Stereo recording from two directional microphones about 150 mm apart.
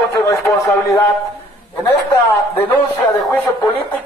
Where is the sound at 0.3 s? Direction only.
20° left (ahead or behind).